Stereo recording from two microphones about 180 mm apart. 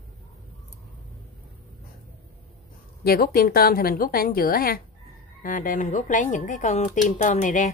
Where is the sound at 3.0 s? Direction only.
55° left (ahead or behind).